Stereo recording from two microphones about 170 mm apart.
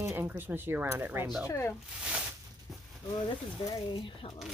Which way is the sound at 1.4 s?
15° left (ahead or behind).